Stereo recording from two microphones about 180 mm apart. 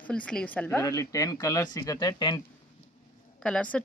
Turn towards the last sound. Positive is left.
turn(degrees=5)  # may be behind; listen again after turning